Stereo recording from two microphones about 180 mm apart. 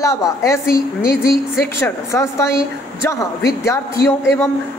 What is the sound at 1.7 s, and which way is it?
A woman's voice, 15° left (ahead or behind).